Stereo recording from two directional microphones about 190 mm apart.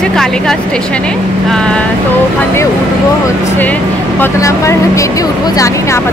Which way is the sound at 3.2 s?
10° left (ahead or behind).